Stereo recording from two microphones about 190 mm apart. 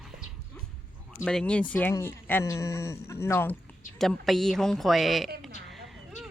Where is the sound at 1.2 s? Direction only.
5° left (ahead or behind).